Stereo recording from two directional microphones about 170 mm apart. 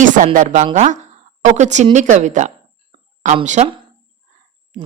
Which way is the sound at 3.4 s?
45° right (ahead or behind).